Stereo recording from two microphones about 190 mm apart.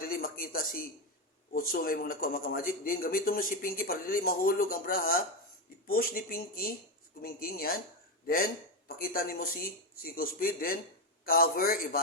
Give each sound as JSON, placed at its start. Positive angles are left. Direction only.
{"t": 0.0, "sound": "a sound", "side_deg": 50}
{"t": 1.5, "sound": "speech", "side_deg": 50}
{"t": 9.0, "sound": "speech", "side_deg": 50}